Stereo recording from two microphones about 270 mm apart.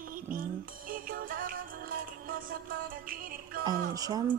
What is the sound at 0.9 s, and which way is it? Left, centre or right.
Music, right.